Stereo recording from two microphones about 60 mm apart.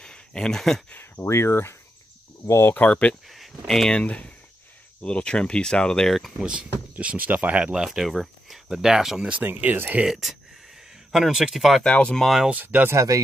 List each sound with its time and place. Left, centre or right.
0.0 s a sound: centre
1.2 s speech: left
2.7 s speech: left
3.3 s speech: centre
4.0 s speech: left; by 6.3 s centre
6.4 s speech: centre
7.6 s speech: centre
9.4 s speech: right
10.0 s speech: centre
11.8 s speech: centre
12.4 s speech: right
12.9 s speech: right